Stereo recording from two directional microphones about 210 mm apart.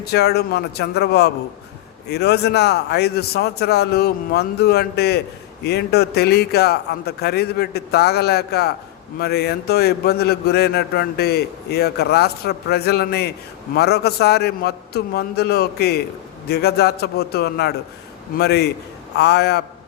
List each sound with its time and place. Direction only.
0.0 s a man's voice: 50° left (ahead or behind)